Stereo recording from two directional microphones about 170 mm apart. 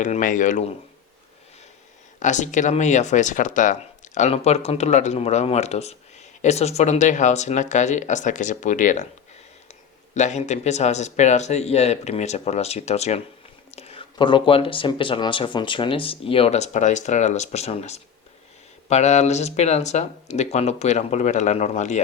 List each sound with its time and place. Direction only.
0.0 s speech: 50° left (ahead or behind)
2.1 s speech: 45° left (ahead or behind)
10.2 s speech: 45° left (ahead or behind)